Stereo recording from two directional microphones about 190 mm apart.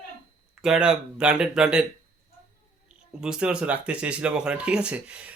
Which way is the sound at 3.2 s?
5° right (ahead or behind).